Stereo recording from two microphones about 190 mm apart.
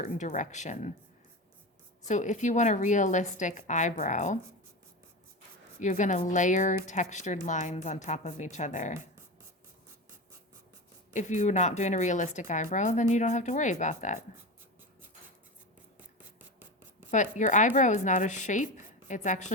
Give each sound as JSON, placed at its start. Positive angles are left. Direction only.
{"t": 0.0, "sound": "a woman's voice", "side_deg": 40}
{"t": 2.0, "sound": "a woman's voice", "side_deg": 40}
{"t": 5.8, "sound": "a woman's voice", "side_deg": 40}
{"t": 11.1, "sound": "a woman's voice", "side_deg": 40}
{"t": 17.1, "sound": "a woman's voice", "side_deg": 40}